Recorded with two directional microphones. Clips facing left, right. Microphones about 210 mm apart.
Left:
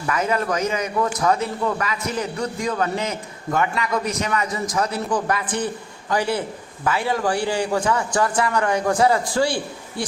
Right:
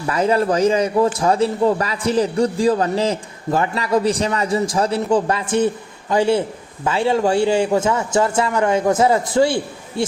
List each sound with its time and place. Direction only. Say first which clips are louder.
0.1 s a man's voice: right 5 dB; 30° right (ahead or behind)